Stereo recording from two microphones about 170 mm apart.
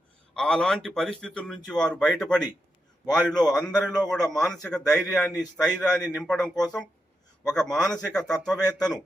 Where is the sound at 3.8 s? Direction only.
25° left (ahead or behind).